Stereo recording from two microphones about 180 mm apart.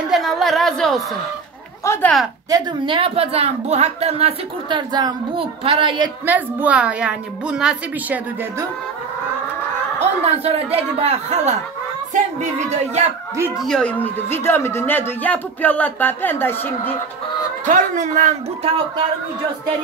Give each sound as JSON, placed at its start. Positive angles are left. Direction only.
{"t": 0.1, "sound": "speech", "side_deg": 0}
{"t": 2.5, "sound": "a woman's voice", "side_deg": -25}
{"t": 6.2, "sound": "a woman's voice", "side_deg": -10}
{"t": 9.9, "sound": "speech", "side_deg": -35}
{"t": 13.6, "sound": "speech", "side_deg": 5}
{"t": 17.6, "sound": "speech", "side_deg": -45}